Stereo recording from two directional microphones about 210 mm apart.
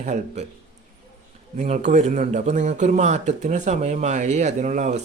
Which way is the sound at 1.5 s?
35° right (ahead or behind).